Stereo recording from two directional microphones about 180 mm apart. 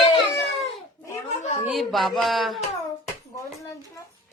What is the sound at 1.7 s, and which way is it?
Speech, centre (ahead or behind).